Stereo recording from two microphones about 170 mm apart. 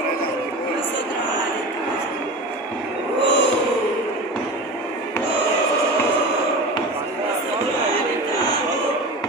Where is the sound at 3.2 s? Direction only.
90° left.